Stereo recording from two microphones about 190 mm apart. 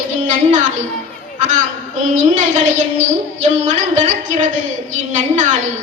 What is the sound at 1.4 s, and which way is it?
A man's voice, 40° right (ahead or behind).